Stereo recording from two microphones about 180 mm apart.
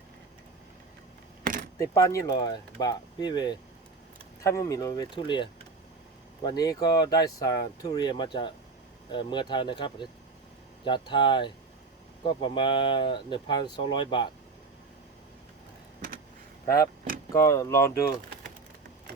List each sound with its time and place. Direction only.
2.0 s speech: 20° left (ahead or behind)
16.6 s speech: 20° left (ahead or behind)